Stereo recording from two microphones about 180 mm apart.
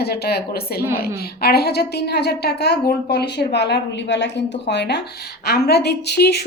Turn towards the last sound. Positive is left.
turn(degrees=60)  # may be behind; listen again after turning